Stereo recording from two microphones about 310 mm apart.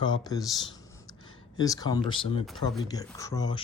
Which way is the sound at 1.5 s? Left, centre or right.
Centre.